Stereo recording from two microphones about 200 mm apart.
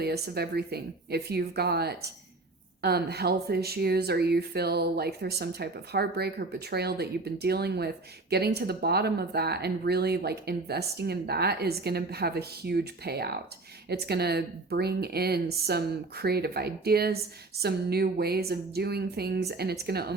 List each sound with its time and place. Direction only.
0.0 s speech: 55° right (ahead or behind)